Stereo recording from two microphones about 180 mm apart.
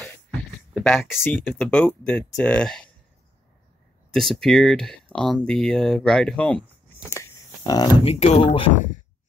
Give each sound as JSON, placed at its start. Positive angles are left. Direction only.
{"t": 0.8, "sound": "speech", "side_deg": 0}
{"t": 4.1, "sound": "speech", "side_deg": 0}
{"t": 7.1, "sound": "a sound", "side_deg": 15}
{"t": 8.0, "sound": "speech", "side_deg": 35}